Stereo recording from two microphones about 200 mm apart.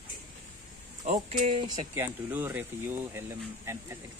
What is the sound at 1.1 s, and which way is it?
Speech, 35° right (ahead or behind).